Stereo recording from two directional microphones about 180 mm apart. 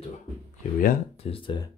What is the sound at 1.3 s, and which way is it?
Speech, 30° left (ahead or behind).